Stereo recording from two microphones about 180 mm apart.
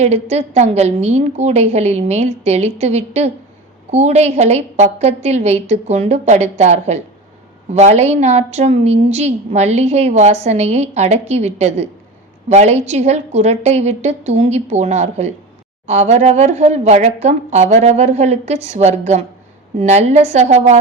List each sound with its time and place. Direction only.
0.0 s a woman's voice: 35° right (ahead or behind)